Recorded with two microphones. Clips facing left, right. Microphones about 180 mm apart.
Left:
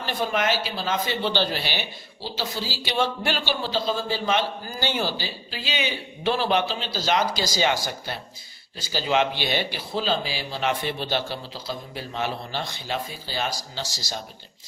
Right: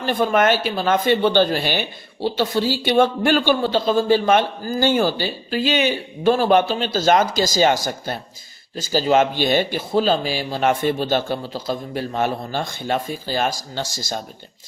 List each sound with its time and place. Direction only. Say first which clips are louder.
0.0 s speech: right 8 dB; 50° right (ahead or behind)